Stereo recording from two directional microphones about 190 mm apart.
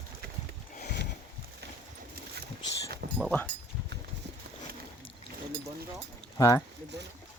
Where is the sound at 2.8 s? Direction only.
55° right (ahead or behind).